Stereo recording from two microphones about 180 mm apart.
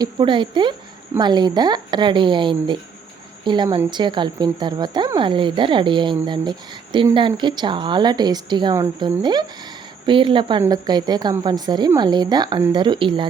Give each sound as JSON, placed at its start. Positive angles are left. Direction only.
{"t": 0.0, "sound": "speech", "side_deg": -25}